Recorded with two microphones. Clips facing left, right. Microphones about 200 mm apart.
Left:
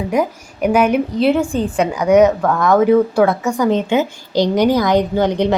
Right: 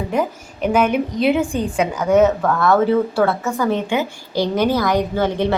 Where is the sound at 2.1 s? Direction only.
15° left (ahead or behind).